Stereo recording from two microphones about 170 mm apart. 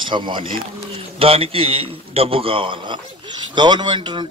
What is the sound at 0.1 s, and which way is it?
A man's voice, 30° right (ahead or behind).